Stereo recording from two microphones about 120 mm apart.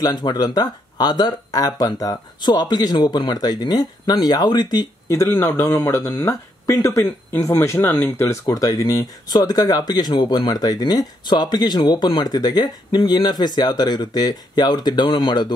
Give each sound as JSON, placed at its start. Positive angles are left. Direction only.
{"t": 0.0, "sound": "speech", "side_deg": 35}